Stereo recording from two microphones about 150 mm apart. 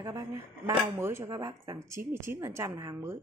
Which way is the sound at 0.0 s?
20° right (ahead or behind).